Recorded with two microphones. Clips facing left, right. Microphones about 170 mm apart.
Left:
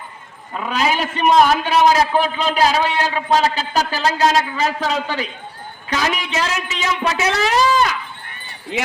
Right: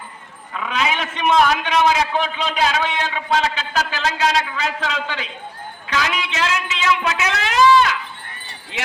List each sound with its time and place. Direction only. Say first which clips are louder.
0.5 s a man's voice: left 3 dB; 40° left (ahead or behind)